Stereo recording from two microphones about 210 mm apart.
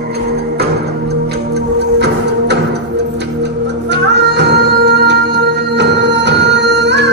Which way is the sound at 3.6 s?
55° right (ahead or behind).